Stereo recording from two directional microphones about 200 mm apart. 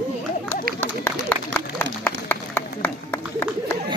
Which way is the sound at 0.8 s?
10° left (ahead or behind).